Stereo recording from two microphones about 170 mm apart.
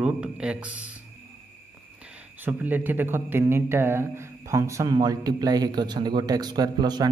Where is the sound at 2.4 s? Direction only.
10° right (ahead or behind).